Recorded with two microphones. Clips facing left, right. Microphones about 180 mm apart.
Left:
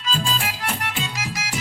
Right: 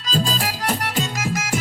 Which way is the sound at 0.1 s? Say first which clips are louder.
Right 3 dB; 40° right (ahead or behind).